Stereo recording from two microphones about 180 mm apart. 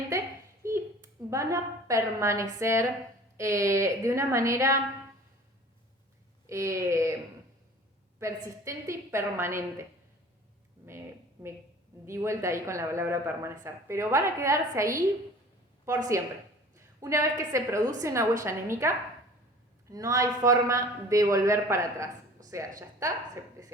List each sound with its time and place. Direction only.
0.1 s a sound: 15° right (ahead or behind)
1.3 s a woman's voice: 20° right (ahead or behind)
6.5 s a woman's voice: 15° right (ahead or behind)
8.2 s a woman's voice: 15° right (ahead or behind)
12.0 s a woman's voice: 15° right (ahead or behind)